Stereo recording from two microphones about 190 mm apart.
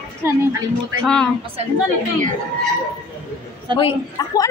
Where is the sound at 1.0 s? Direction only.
5° left (ahead or behind).